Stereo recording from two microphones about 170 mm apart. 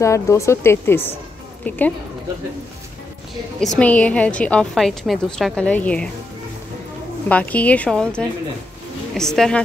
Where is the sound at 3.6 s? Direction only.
5° left (ahead or behind).